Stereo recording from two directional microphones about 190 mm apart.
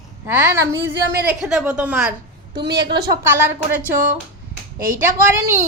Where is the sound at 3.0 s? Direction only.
15° right (ahead or behind).